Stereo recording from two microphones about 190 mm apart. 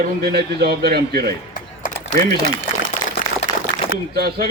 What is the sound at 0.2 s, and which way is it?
A man's voice, 55° right (ahead or behind).